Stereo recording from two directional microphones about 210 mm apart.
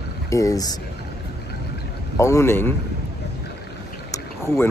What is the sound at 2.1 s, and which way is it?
Speech, 15° left (ahead or behind).